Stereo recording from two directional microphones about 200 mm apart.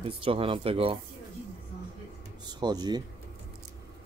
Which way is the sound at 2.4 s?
20° right (ahead or behind).